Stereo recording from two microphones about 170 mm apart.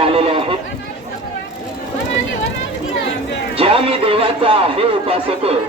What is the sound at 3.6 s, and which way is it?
Speech, 35° right (ahead or behind).